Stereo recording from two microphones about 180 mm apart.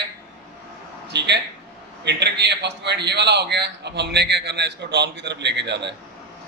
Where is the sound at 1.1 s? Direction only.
70° right (ahead or behind).